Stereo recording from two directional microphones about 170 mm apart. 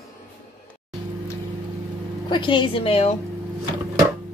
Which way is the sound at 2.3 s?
30° left (ahead or behind).